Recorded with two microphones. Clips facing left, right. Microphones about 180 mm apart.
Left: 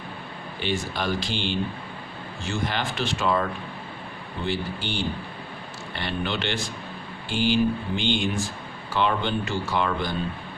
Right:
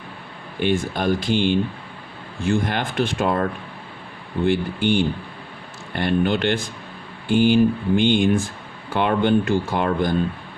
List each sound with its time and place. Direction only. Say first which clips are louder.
0.6 s speech: right 7 dB; 50° right (ahead or behind)